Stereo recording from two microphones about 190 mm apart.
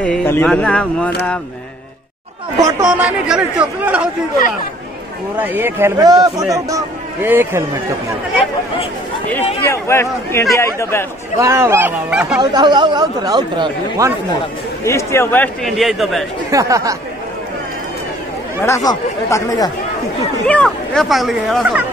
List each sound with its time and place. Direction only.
0.0 s speech: 5° left (ahead or behind)
2.6 s a man's voice: 15° right (ahead or behind)
3.1 s a man's voice: 5° right (ahead or behind)
5.4 s a man's voice: 10° right (ahead or behind)
9.7 s a man's voice: 15° left (ahead or behind)
11.3 s a man's voice: 15° right (ahead or behind)
12.4 s speech: 25° right (ahead or behind)
14.9 s speech: 15° left (ahead or behind)
16.4 s a man's voice: 15° right (ahead or behind)
18.9 s speech: 20° left (ahead or behind)
20.4 s speech: 5° left (ahead or behind)